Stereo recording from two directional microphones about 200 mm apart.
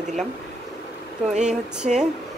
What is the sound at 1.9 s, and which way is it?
Speech, 40° right (ahead or behind).